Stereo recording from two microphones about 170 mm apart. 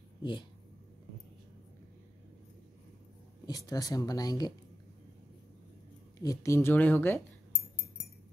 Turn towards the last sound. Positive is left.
turn(degrees=10)  # may be behind; listen again after turning